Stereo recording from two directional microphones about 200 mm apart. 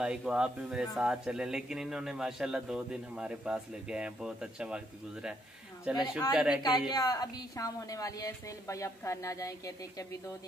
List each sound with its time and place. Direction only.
0.0 s speech: 5° right (ahead or behind)
6.9 s a woman's voice: 20° left (ahead or behind)